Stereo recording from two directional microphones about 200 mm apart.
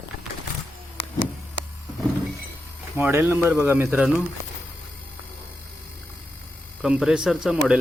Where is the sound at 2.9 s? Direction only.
10° right (ahead or behind).